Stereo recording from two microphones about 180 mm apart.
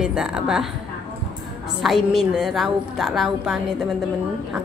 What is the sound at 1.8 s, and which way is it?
A woman's voice, centre (ahead or behind).